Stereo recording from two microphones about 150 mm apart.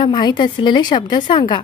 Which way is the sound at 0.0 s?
30° left (ahead or behind).